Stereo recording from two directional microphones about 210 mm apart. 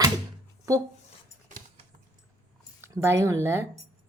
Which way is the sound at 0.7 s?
15° right (ahead or behind).